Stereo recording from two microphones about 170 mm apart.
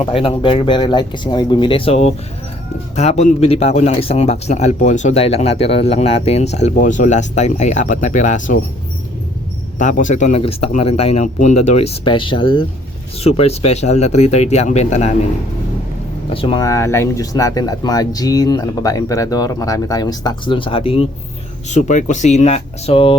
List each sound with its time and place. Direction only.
0.0 s a man's voice: 35° left (ahead or behind)
9.7 s a man's voice: 50° left (ahead or behind)
12.0 s a man's voice: 30° left (ahead or behind)
16.3 s speech: 30° left (ahead or behind)
21.7 s speech: 45° left (ahead or behind)